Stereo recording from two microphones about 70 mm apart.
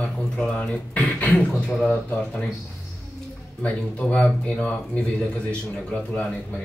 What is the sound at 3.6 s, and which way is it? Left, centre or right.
Speech, centre.